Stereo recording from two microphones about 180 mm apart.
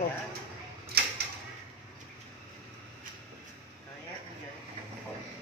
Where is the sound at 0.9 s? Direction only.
60° right (ahead or behind).